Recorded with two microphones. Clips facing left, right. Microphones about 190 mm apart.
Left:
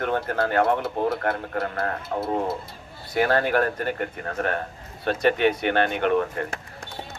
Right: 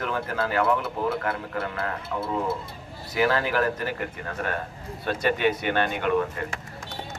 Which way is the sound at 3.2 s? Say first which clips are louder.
Left 2 dB; 55° left (ahead or behind).